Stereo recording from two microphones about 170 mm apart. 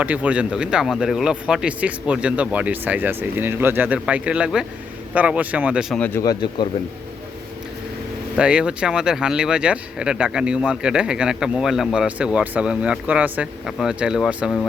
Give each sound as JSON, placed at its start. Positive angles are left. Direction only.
{"t": 0.0, "sound": "speech", "side_deg": -10}
{"t": 6.0, "sound": "speech", "side_deg": 20}
{"t": 8.4, "sound": "speech", "side_deg": -5}